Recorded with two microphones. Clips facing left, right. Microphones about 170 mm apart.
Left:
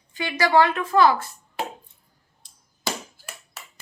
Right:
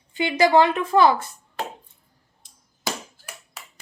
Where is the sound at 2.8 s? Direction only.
10° right (ahead or behind).